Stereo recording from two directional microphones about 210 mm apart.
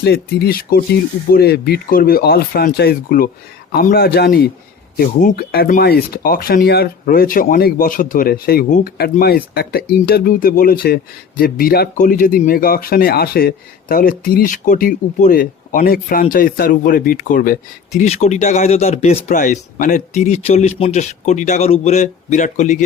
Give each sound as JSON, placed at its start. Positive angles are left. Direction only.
{"t": 0.0, "sound": "a man's voice", "side_deg": 50}